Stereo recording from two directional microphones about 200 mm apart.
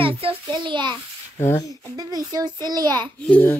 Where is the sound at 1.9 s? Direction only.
20° right (ahead or behind).